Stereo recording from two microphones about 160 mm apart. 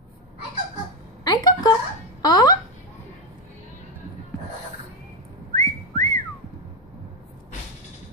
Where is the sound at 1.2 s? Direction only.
25° left (ahead or behind).